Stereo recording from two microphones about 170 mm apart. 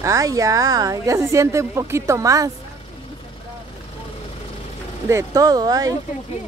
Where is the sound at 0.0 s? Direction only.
20° right (ahead or behind).